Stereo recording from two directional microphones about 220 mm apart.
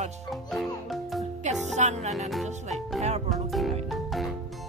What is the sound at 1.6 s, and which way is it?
Speech, 30° right (ahead or behind).